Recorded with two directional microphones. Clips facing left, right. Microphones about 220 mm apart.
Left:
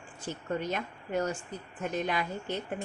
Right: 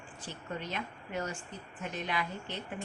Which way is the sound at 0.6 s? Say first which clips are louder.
Left 5 dB; 45° left (ahead or behind).